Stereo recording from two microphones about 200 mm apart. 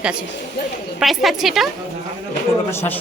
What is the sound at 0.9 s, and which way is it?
Speech, centre (ahead or behind).